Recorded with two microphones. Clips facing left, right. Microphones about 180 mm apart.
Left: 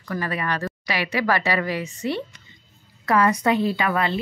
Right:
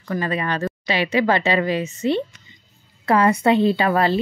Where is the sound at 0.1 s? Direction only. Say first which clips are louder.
Right 3 dB; 25° right (ahead or behind).